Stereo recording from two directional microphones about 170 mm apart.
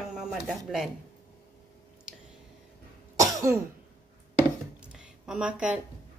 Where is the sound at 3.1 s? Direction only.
20° right (ahead or behind).